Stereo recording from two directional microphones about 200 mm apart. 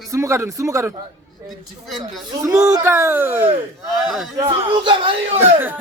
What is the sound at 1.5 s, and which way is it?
Speech, centre (ahead or behind).